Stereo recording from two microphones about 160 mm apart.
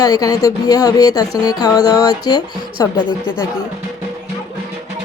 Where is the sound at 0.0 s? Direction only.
25° left (ahead or behind).